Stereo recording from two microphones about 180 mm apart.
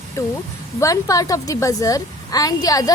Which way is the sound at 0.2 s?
15° left (ahead or behind).